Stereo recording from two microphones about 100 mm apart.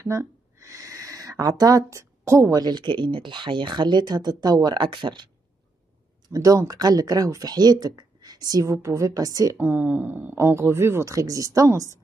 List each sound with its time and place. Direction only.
0.0 s a sound: 30° right (ahead or behind)
2.6 s speech: 50° right (ahead or behind)
6.3 s speech: 35° right (ahead or behind)
9.6 s speech: 15° right (ahead or behind)